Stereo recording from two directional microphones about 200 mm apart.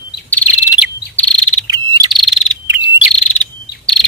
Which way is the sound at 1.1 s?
5° left (ahead or behind).